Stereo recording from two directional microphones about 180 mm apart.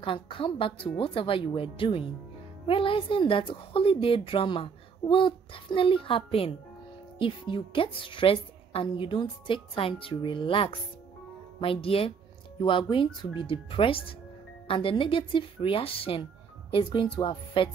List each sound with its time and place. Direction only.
0.0 s a woman's voice: 30° left (ahead or behind)